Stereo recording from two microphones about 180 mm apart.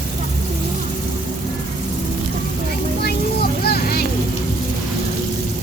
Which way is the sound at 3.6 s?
60° left (ahead or behind).